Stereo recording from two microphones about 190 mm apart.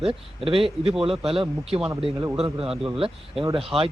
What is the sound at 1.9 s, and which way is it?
Speech, 15° right (ahead or behind).